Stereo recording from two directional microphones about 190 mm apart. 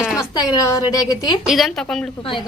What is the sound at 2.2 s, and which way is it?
Speech, 25° left (ahead or behind).